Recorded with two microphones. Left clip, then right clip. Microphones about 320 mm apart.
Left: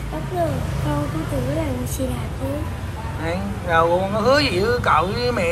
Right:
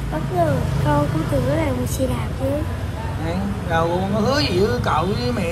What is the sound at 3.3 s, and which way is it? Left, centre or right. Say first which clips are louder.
Speech: left 3 dB; centre.